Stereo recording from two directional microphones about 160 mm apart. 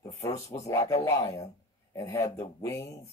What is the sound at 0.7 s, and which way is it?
Speech, 20° left (ahead or behind).